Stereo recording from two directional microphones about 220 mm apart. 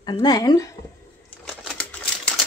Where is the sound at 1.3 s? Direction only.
5° left (ahead or behind).